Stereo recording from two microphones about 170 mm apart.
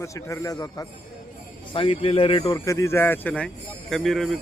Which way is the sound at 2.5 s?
20° left (ahead or behind).